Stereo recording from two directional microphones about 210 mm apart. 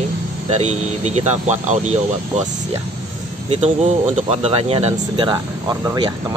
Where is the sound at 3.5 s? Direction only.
30° right (ahead or behind).